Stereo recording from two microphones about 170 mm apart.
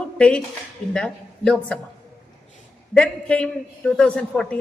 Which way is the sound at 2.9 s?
5° left (ahead or behind).